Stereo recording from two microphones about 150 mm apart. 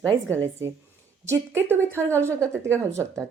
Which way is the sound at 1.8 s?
10° left (ahead or behind).